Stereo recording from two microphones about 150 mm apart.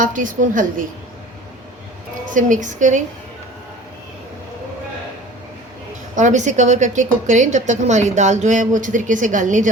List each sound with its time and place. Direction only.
0.0 s a woman's voice: 60° right (ahead or behind)
2.3 s a woman's voice: 60° right (ahead or behind)
6.1 s a woman's voice: 55° right (ahead or behind)